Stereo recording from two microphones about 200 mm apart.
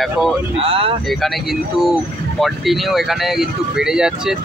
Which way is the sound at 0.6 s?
30° right (ahead or behind).